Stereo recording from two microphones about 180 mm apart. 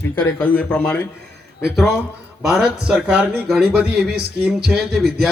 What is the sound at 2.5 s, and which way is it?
A man's voice, 5° right (ahead or behind).